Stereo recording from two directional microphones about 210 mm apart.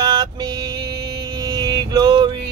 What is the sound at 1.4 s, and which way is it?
Mantra, 20° right (ahead or behind).